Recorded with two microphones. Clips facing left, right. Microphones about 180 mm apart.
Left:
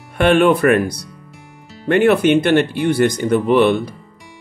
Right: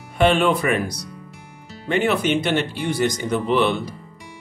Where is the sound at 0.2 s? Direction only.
60° left (ahead or behind).